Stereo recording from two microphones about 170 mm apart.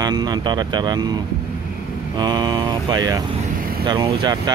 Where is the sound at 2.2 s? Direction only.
25° right (ahead or behind).